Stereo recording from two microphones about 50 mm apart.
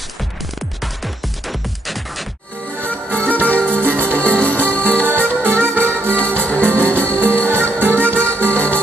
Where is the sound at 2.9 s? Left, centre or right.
Left.